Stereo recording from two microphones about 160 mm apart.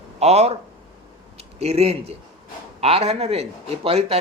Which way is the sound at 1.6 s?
40° right (ahead or behind).